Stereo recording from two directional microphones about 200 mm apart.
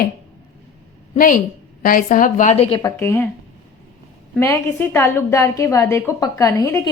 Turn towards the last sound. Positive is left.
turn(degrees=15)  # may be behind; listen again after turning